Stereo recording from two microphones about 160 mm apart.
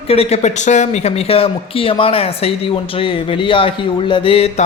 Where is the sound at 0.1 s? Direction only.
40° left (ahead or behind).